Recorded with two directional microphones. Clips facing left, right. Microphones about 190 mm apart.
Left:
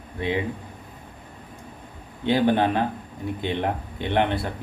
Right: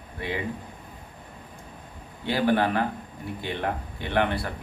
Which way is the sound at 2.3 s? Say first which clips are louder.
Left 3 dB; 20° left (ahead or behind).